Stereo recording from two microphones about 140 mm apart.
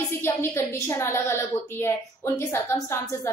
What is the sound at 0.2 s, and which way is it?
A woman's voice, 20° left (ahead or behind).